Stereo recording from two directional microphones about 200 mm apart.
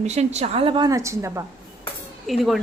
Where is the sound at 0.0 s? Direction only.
35° right (ahead or behind); by 1.5 s 15° right (ahead or behind).